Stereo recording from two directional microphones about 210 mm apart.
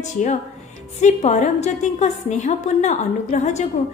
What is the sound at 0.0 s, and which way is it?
A woman's voice, 35° left (ahead or behind).